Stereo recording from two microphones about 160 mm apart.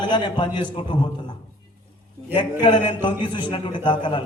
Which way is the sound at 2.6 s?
30° left (ahead or behind).